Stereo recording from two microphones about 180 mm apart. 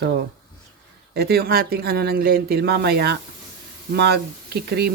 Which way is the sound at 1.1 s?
60° right (ahead or behind).